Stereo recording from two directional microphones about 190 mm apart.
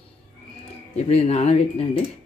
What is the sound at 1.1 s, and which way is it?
Speech, 35° left (ahead or behind).